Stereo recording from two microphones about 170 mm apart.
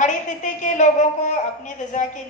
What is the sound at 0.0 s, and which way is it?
A woman's voice, 45° left (ahead or behind).